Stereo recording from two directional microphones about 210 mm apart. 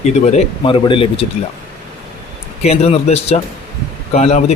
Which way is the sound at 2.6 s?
30° left (ahead or behind).